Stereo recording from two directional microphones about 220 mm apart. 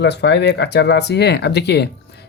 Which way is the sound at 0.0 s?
50° left (ahead or behind).